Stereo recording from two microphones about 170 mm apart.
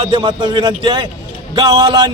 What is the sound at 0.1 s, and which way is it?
Speech, 25° right (ahead or behind).